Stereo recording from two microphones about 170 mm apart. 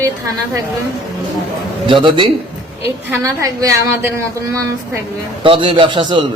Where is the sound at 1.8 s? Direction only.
30° right (ahead or behind).